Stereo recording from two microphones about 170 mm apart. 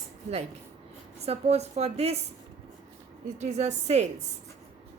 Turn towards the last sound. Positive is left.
turn(degrees=-40)  # may be behind; listen again after turning